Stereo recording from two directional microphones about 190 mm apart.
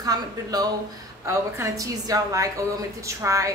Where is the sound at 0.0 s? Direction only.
20° right (ahead or behind).